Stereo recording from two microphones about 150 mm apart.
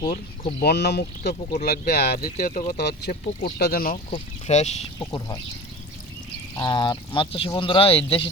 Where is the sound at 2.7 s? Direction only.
90° left.